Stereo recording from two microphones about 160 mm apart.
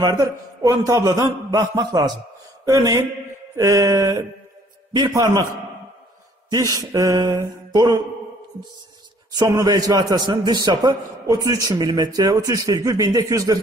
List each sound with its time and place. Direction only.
0.0 s a man's voice: 25° right (ahead or behind)
6.5 s a man's voice: 20° right (ahead or behind)
9.3 s a man's voice: 20° right (ahead or behind)